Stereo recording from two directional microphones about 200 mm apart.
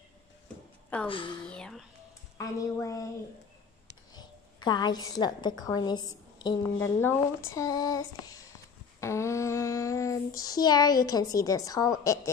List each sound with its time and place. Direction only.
1.0 s a woman's voice: 25° left (ahead or behind)
1.5 s a sound: centre (ahead or behind)
2.3 s speech: 15° left (ahead or behind)
4.1 s a woman's voice: 20° left (ahead or behind)
9.0 s child singing: 15° left (ahead or behind)